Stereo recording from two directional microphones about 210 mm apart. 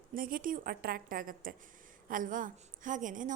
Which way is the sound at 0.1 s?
40° right (ahead or behind).